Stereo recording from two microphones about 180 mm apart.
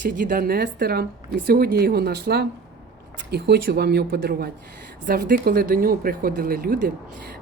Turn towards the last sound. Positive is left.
turn(degrees=-55)  # may be behind; listen again after turning